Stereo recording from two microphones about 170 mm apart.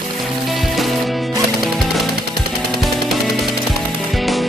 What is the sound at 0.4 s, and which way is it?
Music, centre (ahead or behind).